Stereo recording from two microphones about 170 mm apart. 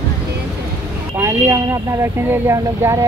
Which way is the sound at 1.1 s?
10° right (ahead or behind).